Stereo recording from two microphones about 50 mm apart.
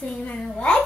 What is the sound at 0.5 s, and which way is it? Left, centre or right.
Speech, centre.